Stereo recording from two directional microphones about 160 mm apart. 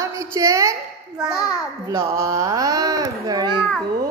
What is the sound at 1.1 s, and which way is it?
Speech, 5° right (ahead or behind).